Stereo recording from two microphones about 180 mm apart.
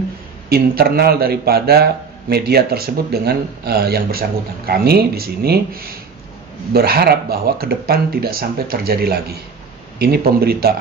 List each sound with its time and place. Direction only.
0.5 s a man's voice: 60° right (ahead or behind)